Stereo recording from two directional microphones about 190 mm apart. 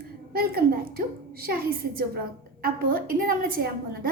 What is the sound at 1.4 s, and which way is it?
A woman's voice, 50° right (ahead or behind).